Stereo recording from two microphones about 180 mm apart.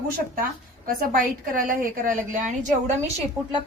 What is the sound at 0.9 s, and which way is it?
A woman's voice, 55° right (ahead or behind).